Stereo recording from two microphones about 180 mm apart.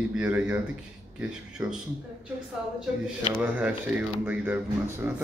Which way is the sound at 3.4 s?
10° right (ahead or behind).